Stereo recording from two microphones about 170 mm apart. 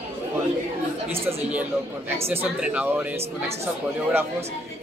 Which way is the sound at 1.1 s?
35° right (ahead or behind).